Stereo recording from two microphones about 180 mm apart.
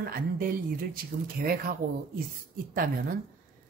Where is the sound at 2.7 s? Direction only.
50° right (ahead or behind).